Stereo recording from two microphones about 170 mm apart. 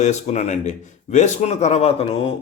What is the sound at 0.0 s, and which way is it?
A man's voice, 45° left (ahead or behind).